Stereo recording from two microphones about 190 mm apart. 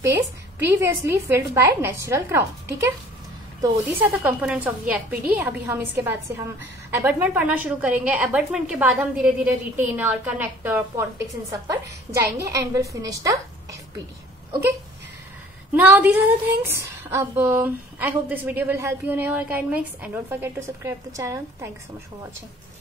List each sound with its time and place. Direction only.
0.6 s a woman's voice: 15° right (ahead or behind)
15.7 s a woman's voice: 10° right (ahead or behind)